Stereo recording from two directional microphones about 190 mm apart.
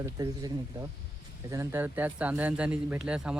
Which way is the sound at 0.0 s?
20° right (ahead or behind).